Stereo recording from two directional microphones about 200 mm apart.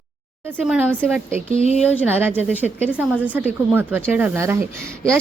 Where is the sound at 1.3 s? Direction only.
40° right (ahead or behind).